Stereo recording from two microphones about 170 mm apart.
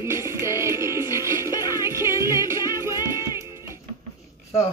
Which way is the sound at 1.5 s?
25° left (ahead or behind).